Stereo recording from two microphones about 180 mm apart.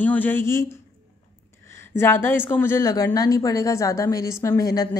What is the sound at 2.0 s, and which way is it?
A woman's voice, 10° left (ahead or behind).